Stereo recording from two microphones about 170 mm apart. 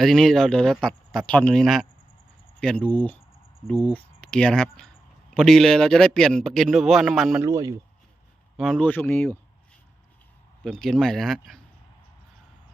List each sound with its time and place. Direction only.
0.0 s a man's voice: centre (ahead or behind)
7.4 s speech: 15° right (ahead or behind)
8.5 s speech: 5° left (ahead or behind)
10.6 s a man's voice: 5° left (ahead or behind)